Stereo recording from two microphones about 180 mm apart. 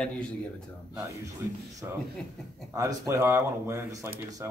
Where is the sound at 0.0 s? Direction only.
5° left (ahead or behind).